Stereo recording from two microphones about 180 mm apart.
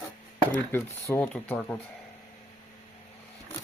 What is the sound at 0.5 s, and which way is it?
Speech, 10° left (ahead or behind).